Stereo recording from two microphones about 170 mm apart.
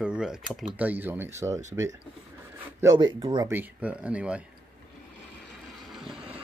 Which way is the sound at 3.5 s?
10° right (ahead or behind).